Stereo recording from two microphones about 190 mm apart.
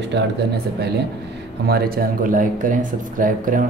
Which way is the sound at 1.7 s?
55° right (ahead or behind).